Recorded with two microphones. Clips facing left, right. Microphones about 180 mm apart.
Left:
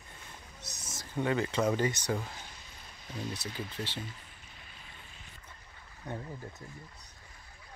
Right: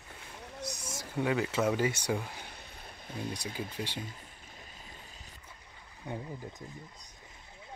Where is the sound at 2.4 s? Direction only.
60° right (ahead or behind).